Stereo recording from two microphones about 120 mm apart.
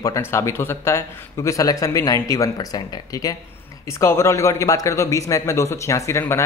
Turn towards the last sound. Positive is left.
turn(degrees=20)  # may be behind; listen again after turning